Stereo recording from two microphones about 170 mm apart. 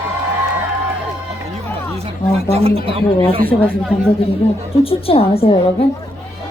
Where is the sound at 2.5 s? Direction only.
35° right (ahead or behind).